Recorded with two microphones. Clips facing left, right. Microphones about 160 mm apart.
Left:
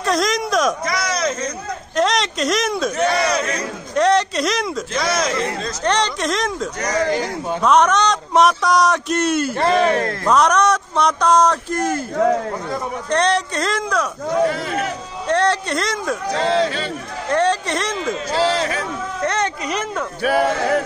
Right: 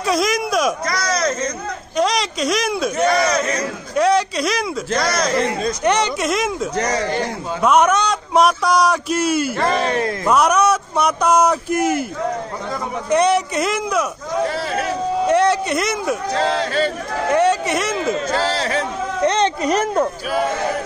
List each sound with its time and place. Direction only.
0.0 s a sound: 5° right (ahead or behind)
3.9 s a man's voice: 5° right (ahead or behind)
5.6 s a man's voice: 10° right (ahead or behind)
13.1 s speech: 10° right (ahead or behind)
15.2 s a man's voice: 10° right (ahead or behind)
16.3 s speech: 45° right (ahead or behind)
17.3 s speech: 10° right (ahead or behind)
18.3 s a sound: 35° right (ahead or behind)
19.2 s a sound: 20° right (ahead or behind)
19.6 s speech: 40° right (ahead or behind)